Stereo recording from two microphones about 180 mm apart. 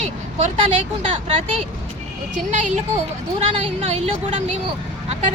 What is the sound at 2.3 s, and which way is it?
Speech, 45° right (ahead or behind).